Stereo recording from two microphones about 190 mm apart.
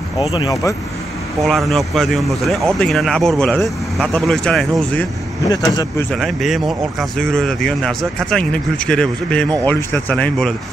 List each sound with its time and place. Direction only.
0.4 s speech: 15° left (ahead or behind)
1.5 s speech: centre (ahead or behind)
5.5 s speech: 20° left (ahead or behind)
6.1 s speech: centre (ahead or behind)